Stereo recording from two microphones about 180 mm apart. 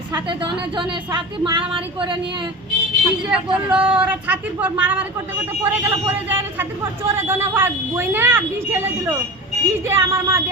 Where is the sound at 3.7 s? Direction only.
5° right (ahead or behind).